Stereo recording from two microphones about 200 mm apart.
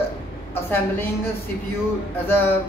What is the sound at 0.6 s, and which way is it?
Speech, 10° left (ahead or behind).